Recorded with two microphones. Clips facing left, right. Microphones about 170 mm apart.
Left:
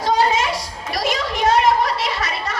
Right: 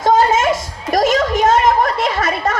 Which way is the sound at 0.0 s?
50° right (ahead or behind).